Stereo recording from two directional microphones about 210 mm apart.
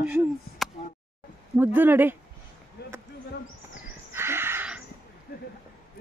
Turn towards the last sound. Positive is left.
turn(degrees=-10)  # may be behind; listen again after turning